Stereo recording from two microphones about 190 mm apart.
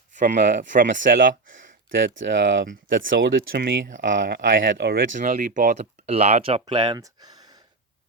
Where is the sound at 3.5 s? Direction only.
50° right (ahead or behind).